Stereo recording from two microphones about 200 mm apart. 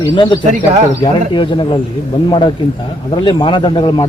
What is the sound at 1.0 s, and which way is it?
Speech, 25° left (ahead or behind).